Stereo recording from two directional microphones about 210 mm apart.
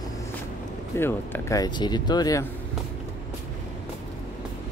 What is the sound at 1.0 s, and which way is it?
Speech, 10° left (ahead or behind).